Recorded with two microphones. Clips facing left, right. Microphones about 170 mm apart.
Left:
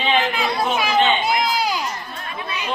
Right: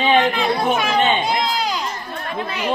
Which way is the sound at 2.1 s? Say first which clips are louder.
Right 4 dB; 50° right (ahead or behind).